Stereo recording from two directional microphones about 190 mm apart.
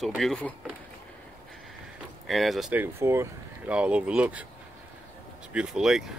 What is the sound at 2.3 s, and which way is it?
Speech, centre (ahead or behind).